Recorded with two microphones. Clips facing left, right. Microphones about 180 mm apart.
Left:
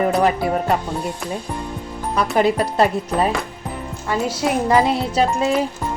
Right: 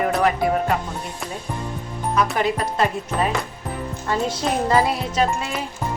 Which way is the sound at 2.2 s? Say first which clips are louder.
Left 4 dB; 35° left (ahead or behind).